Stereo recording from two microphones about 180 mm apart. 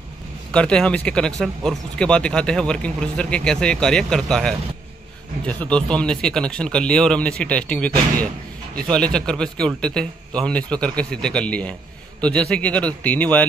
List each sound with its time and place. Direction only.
0.5 s a man's voice: 5° left (ahead or behind)